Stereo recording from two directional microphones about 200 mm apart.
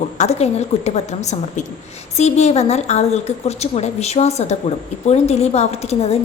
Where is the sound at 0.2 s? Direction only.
35° left (ahead or behind).